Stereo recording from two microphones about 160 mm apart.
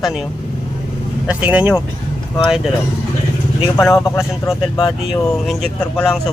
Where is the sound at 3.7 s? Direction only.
20° left (ahead or behind).